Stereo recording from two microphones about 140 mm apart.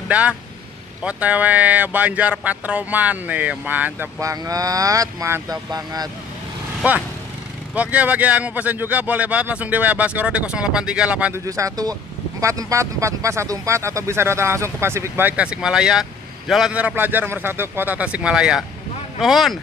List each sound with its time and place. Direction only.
0.1 s speech: 10° right (ahead or behind)
4.2 s speech: 25° right (ahead or behind)
6.8 s speech: 10° right (ahead or behind)
11.4 s speech: 25° right (ahead or behind); by 19.6 s centre (ahead or behind)